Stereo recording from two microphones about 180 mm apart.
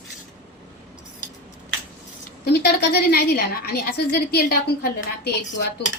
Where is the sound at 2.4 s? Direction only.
60° left (ahead or behind).